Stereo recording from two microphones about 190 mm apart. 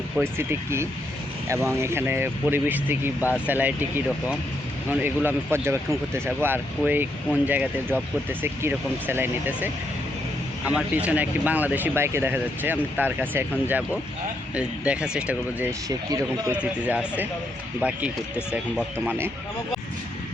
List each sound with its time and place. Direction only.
0.2 s speech: 10° right (ahead or behind)
10.7 s speech: 5° right (ahead or behind)
15.9 s speech: 20° right (ahead or behind)
16.5 s speech: 5° right (ahead or behind)